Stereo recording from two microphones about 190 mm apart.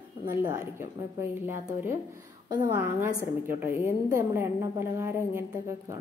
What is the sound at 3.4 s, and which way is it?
A woman's voice, 10° right (ahead or behind).